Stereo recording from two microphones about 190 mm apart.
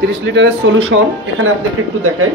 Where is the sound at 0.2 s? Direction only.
65° right (ahead or behind).